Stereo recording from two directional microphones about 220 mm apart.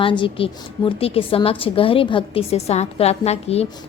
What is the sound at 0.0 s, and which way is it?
A woman's voice, 20° left (ahead or behind).